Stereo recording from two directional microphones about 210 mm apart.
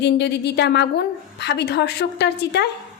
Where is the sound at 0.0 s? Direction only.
55° left (ahead or behind).